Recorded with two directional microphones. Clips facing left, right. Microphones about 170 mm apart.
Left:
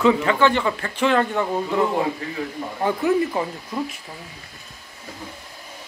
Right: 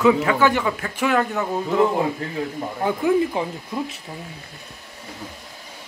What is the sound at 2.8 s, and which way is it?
Speech, 10° right (ahead or behind).